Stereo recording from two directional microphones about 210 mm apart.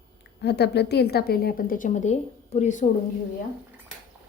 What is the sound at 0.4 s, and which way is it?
A woman's voice, 50° left (ahead or behind).